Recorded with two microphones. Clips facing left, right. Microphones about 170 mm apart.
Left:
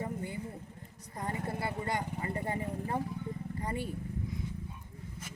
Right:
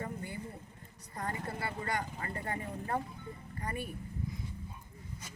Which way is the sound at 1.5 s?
20° left (ahead or behind).